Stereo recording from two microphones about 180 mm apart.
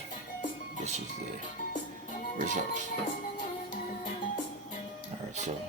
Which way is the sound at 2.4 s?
45° right (ahead or behind).